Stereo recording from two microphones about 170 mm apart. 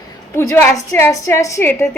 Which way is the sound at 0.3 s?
10° left (ahead or behind).